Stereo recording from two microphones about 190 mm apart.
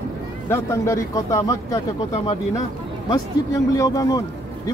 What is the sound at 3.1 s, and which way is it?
Speech, 20° left (ahead or behind).